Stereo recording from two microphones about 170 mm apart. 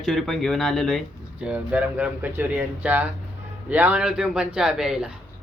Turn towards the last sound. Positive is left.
turn(degrees=-5)  # may be behind; listen again after turning